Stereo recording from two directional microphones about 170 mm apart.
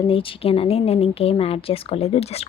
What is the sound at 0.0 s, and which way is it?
Speech, 30° left (ahead or behind).